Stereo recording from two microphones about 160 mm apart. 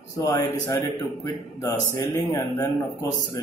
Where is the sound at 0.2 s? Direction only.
20° left (ahead or behind).